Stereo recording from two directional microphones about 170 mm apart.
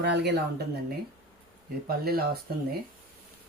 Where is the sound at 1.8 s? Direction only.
65° right (ahead or behind).